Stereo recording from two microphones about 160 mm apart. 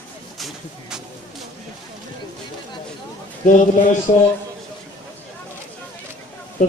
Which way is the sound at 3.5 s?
50° left (ahead or behind).